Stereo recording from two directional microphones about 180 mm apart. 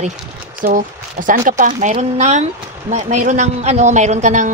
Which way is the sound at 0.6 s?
50° right (ahead or behind).